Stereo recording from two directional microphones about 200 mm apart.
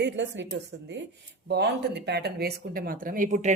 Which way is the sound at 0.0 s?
60° right (ahead or behind).